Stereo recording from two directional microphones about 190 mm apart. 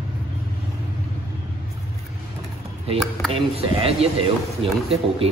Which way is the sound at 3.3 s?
30° right (ahead or behind).